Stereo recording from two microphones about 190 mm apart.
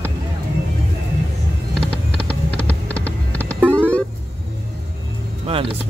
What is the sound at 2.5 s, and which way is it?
Music, 5° left (ahead or behind).